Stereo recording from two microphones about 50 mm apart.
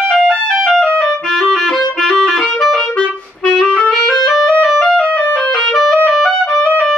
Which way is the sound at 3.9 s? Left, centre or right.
Centre.